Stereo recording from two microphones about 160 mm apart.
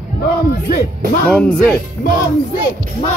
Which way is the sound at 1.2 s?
5° left (ahead or behind).